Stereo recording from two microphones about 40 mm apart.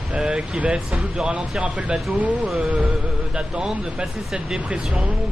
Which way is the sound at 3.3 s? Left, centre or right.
Right.